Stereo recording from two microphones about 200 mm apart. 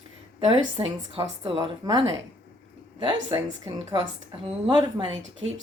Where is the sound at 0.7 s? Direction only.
25° right (ahead or behind).